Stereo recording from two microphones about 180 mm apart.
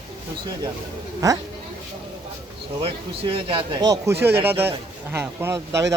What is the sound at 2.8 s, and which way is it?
Speech, 30° right (ahead or behind).